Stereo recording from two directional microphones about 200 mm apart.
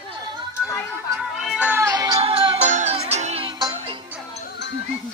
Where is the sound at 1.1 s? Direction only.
Centre (ahead or behind); by 4.0 s 25° right (ahead or behind).